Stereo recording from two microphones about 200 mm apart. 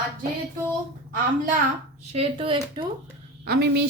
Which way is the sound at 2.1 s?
30° right (ahead or behind).